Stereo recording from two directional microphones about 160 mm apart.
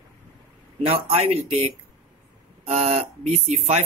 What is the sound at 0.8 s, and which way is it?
Speech, 35° right (ahead or behind).